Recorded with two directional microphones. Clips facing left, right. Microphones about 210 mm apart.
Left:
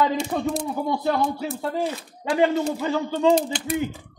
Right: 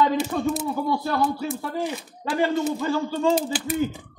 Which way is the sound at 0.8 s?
20° left (ahead or behind).